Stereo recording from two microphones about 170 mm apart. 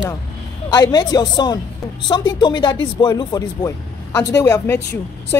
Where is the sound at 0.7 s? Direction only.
25° left (ahead or behind).